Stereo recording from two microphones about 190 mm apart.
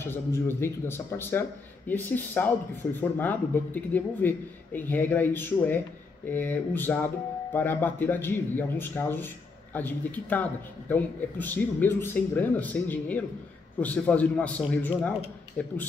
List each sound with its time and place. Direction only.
0.0 s speech: 10° left (ahead or behind)